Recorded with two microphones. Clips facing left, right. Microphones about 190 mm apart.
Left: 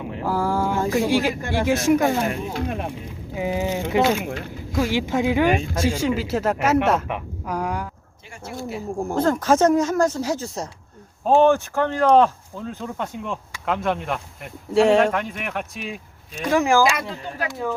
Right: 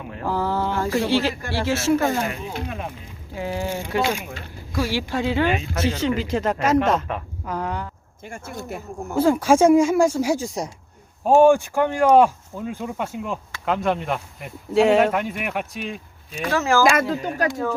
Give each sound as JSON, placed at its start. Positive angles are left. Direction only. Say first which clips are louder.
{"t": 0.1, "sound": "speech", "louder": "left 1 dB", "side_deg": 10}
{"t": 2.3, "sound": "speech", "louder": "left 4 dB", "side_deg": 50}
{"t": 3.3, "sound": "a woman's voice", "louder": "left 3 dB", "side_deg": 15}
{"t": 8.3, "sound": "speech", "louder": "left 1 dB", "side_deg": -50}
{"t": 9.1, "sound": "speech", "louder": "right 2 dB", "side_deg": -10}
{"t": 16.5, "sound": "speech", "louder": "left 2 dB", "side_deg": 15}
{"t": 16.9, "sound": "speech", "louder": "right 7 dB", "side_deg": -45}